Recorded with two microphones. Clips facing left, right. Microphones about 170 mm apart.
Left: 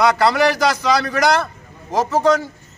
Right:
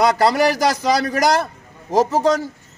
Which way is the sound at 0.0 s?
40° right (ahead or behind).